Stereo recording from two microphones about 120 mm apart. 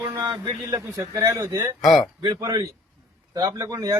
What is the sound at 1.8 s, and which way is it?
Speech, centre (ahead or behind).